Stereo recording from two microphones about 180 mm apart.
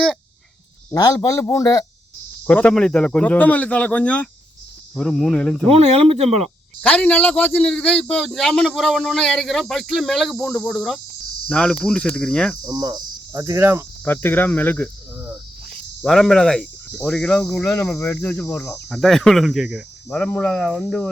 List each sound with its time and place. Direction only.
0.9 s a man's voice: 20° left (ahead or behind)
2.5 s a man's voice: 5° left (ahead or behind)
5.6 s speech: 35° right (ahead or behind)
6.8 s a man's voice: 10° left (ahead or behind)
12.6 s cricket: 20° right (ahead or behind)
14.0 s a man's voice: 10° left (ahead or behind)
16.0 s a man's voice: centre (ahead or behind)
18.9 s a man's voice: centre (ahead or behind)